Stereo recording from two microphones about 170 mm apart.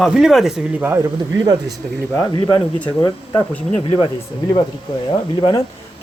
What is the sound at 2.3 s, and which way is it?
Speech, 25° left (ahead or behind).